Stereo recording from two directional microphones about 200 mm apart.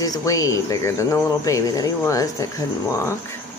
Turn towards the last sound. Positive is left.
turn(degrees=15)  # may be behind; listen again after turning